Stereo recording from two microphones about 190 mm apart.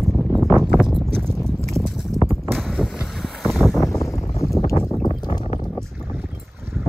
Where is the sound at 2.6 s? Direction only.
Centre (ahead or behind).